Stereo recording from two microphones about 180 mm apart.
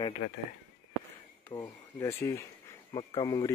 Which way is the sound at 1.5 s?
20° left (ahead or behind).